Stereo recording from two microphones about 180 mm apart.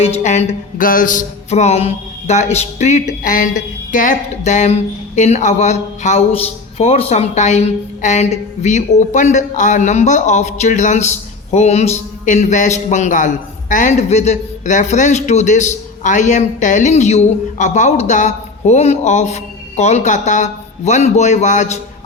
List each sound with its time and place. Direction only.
0.0 s music: 40° left (ahead or behind)